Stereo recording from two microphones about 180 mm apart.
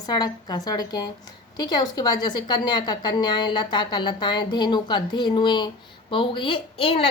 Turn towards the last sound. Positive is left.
turn(degrees=30)  # may be behind; listen again after turning